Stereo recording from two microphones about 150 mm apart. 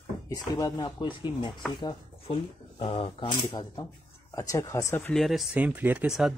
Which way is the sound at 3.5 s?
25° left (ahead or behind).